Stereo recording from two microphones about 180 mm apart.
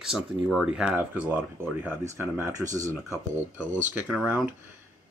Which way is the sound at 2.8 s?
15° left (ahead or behind).